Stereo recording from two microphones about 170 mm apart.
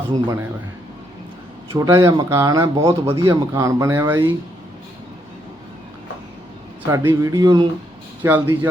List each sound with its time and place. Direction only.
1.7 s speech: 20° right (ahead or behind)
6.8 s speech: 15° right (ahead or behind)
8.2 s speech: 10° right (ahead or behind)